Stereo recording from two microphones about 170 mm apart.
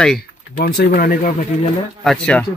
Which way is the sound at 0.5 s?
65° left (ahead or behind).